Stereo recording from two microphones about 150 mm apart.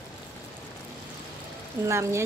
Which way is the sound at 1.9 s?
20° right (ahead or behind).